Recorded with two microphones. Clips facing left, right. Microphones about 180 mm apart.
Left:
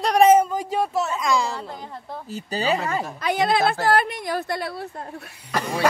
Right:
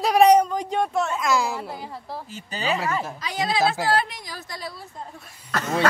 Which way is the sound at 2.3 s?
35° left (ahead or behind).